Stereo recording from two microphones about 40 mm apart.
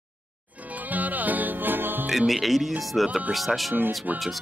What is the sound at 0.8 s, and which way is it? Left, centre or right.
Music, right.